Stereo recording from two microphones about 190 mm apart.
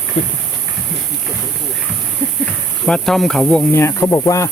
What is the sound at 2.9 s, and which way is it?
Speech, 5° left (ahead or behind).